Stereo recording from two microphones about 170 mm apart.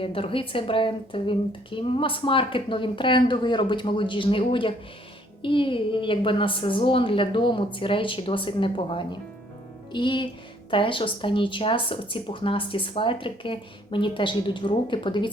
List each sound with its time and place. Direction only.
0.0 s a woman's voice: 35° left (ahead or behind)